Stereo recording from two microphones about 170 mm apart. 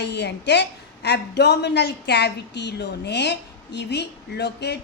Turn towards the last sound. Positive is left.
turn(degrees=80)